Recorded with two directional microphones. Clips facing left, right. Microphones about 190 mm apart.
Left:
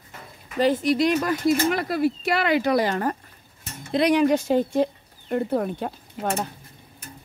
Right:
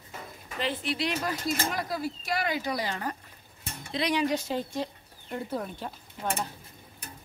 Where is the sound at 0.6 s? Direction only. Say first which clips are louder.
Left 11 dB; 40° left (ahead or behind).